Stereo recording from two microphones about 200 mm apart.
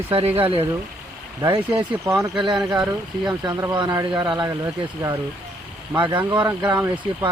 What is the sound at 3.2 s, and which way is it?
Speech, 20° right (ahead or behind).